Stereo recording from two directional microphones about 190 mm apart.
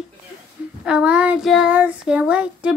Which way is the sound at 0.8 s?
5° right (ahead or behind).